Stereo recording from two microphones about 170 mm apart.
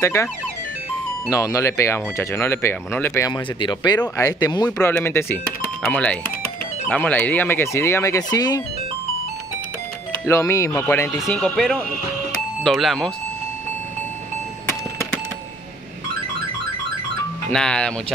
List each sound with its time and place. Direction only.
0.0 s speech: 15° left (ahead or behind)
1.3 s speech: 20° left (ahead or behind)
4.6 s speech: 10° left (ahead or behind)
10.2 s speech: 15° left (ahead or behind)
11.2 s speech: 5° left (ahead or behind)
17.5 s speech: 5° left (ahead or behind)